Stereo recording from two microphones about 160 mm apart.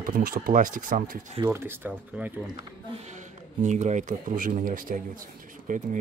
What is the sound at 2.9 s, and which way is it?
Speech, 45° right (ahead or behind).